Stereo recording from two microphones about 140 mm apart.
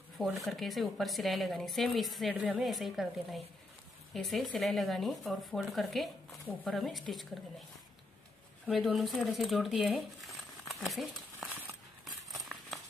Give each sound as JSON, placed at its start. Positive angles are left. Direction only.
{"t": 0.2, "sound": "a woman's voice", "side_deg": 0}
{"t": 8.6, "sound": "speech", "side_deg": 0}
{"t": 12.0, "sound": "a sound", "side_deg": 0}